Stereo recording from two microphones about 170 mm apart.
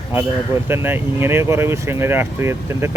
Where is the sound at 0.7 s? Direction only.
15° right (ahead or behind).